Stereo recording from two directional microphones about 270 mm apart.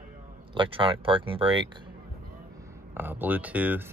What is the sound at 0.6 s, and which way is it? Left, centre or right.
Speech, centre.